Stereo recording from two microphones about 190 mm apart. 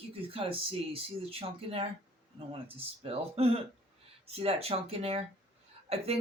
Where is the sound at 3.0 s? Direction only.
30° right (ahead or behind).